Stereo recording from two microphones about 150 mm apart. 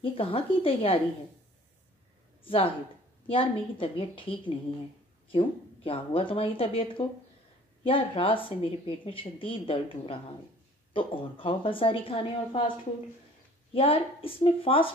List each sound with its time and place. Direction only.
0.0 s speech: 40° left (ahead or behind)
2.4 s speech: 35° left (ahead or behind)
13.7 s speech: 40° left (ahead or behind)